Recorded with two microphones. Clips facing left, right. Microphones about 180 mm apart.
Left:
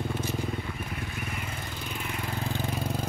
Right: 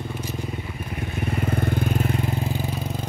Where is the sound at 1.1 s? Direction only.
30° right (ahead or behind).